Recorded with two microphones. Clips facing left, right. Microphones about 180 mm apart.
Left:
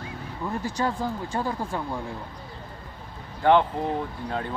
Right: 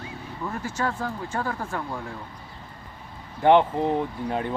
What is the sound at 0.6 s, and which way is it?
Speech, 15° left (ahead or behind).